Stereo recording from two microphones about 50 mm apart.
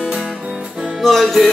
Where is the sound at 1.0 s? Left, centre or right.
Centre.